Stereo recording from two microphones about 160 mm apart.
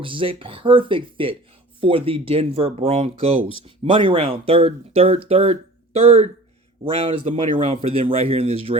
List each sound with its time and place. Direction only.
0.0 s speech: 35° right (ahead or behind)